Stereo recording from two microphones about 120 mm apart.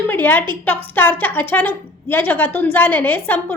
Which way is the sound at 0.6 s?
15° left (ahead or behind).